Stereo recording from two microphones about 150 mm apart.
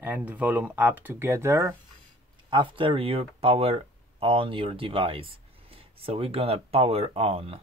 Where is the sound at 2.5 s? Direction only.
35° right (ahead or behind).